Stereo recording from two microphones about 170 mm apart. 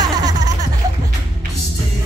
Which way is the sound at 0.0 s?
25° right (ahead or behind).